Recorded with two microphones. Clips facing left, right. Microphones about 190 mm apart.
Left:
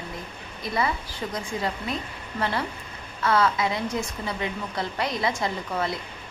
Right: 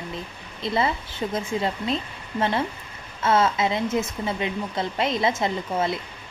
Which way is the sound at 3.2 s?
25° right (ahead or behind).